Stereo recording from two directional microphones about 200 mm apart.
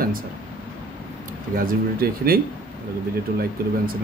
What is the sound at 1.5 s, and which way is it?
Speech, 45° right (ahead or behind).